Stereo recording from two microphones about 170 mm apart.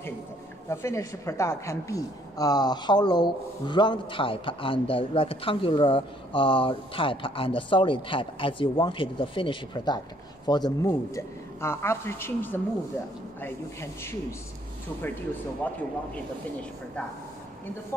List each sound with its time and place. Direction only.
0.7 s a woman's voice: 15° left (ahead or behind)
15.6 s speech: 10° left (ahead or behind)